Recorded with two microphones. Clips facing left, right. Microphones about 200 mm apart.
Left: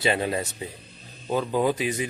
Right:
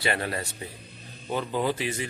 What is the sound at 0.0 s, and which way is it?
Speech, 20° left (ahead or behind).